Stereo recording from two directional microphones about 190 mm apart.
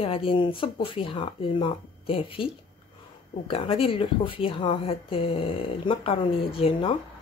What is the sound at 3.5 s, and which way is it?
Speech, 30° left (ahead or behind).